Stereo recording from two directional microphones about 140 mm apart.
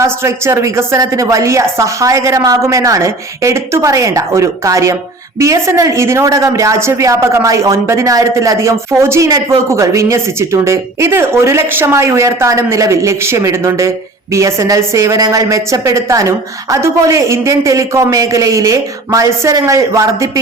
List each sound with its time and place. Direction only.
0.0 s a woman's voice: 20° right (ahead or behind)